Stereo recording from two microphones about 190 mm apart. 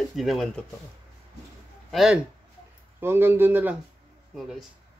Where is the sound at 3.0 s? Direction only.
10° right (ahead or behind).